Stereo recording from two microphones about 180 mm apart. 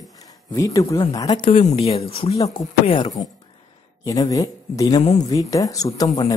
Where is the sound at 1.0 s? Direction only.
20° left (ahead or behind).